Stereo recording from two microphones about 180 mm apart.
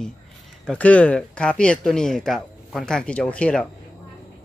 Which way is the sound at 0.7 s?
5° left (ahead or behind).